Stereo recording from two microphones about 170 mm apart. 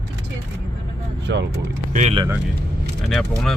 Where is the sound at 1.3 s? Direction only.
90° right.